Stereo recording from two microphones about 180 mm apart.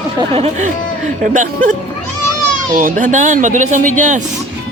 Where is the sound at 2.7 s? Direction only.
50° right (ahead or behind).